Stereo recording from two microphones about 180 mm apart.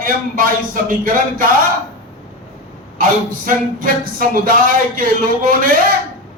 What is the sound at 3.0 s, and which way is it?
Speech, 50° right (ahead or behind).